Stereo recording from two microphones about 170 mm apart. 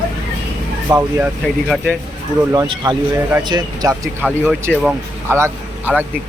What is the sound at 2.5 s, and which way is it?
Speech, 25° right (ahead or behind).